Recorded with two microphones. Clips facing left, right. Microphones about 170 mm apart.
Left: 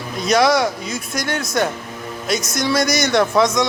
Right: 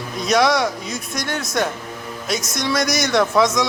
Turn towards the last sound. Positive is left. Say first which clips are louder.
# left 1 dB
turn(degrees=0)  # may be behind; listen again after turning